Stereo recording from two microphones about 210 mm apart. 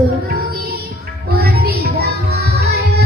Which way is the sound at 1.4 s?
50° right (ahead or behind).